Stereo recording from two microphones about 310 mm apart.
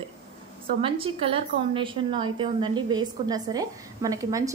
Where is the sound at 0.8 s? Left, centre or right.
Centre.